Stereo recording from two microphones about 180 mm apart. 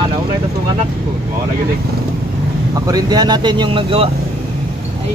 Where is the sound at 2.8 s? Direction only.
20° right (ahead or behind).